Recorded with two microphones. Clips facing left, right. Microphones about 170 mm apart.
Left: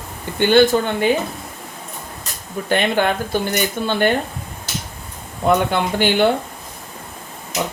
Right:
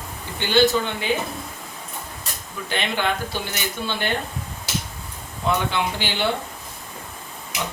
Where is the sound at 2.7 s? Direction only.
50° left (ahead or behind).